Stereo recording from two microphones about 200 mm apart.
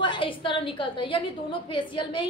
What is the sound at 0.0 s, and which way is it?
A woman's voice, 25° left (ahead or behind).